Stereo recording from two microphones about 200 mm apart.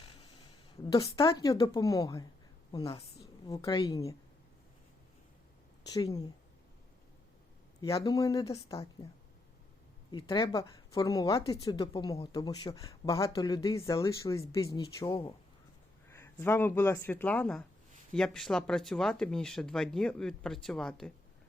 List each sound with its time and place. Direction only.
0.9 s speech: 20° left (ahead or behind)
3.4 s speech: 20° left (ahead or behind)
5.9 s a woman's voice: 20° left (ahead or behind)
7.8 s a woman's voice: 15° left (ahead or behind)
10.1 s a woman's voice: 20° left (ahead or behind); by 21.1 s 5° left (ahead or behind)